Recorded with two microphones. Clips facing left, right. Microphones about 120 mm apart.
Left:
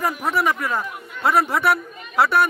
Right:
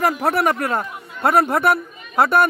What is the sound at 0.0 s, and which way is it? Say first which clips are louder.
Speech: right 3 dB; 65° right (ahead or behind).